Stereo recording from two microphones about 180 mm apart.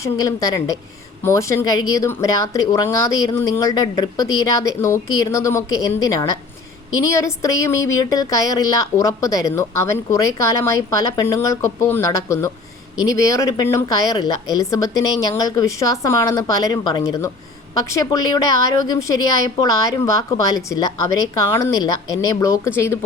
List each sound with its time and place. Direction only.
0.0 s a woman's voice: 20° left (ahead or behind)